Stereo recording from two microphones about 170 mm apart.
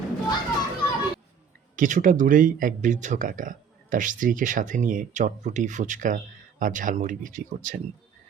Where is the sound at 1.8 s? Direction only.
50° right (ahead or behind).